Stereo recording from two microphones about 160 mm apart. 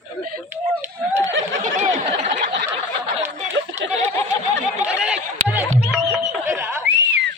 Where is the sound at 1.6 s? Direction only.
50° right (ahead or behind).